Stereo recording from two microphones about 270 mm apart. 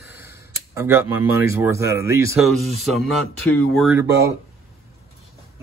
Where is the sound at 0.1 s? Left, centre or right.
Centre.